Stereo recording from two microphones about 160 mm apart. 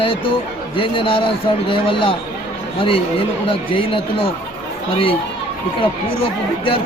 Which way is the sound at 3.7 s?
35° left (ahead or behind).